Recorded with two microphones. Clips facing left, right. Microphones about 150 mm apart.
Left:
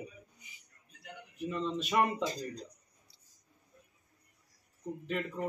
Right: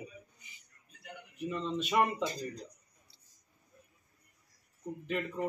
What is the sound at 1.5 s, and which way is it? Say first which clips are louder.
Speech: even; centre (ahead or behind).